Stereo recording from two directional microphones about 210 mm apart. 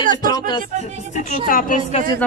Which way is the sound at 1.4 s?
40° left (ahead or behind).